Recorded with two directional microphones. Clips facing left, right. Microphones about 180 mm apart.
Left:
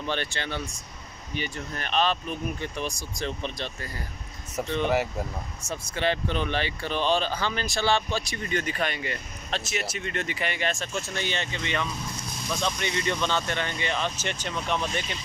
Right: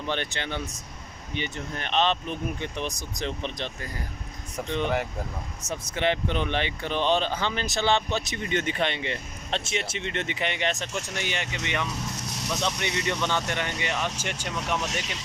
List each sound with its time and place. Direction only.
0.0 s speech: 20° right (ahead or behind)
5.6 s speech: 20° right (ahead or behind)
14.8 s speech: 85° right